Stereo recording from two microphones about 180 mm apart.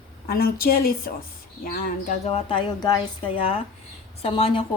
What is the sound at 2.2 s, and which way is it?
A woman's voice, 30° left (ahead or behind).